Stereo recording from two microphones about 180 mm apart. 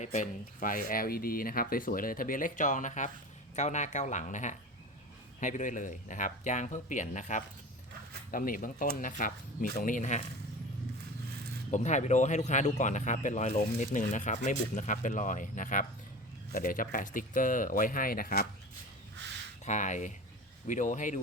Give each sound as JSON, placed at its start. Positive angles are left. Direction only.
{"t": 0.0, "sound": "speech", "side_deg": 40}
{"t": 11.7, "sound": "speech", "side_deg": 40}
{"t": 19.6, "sound": "speech", "side_deg": 45}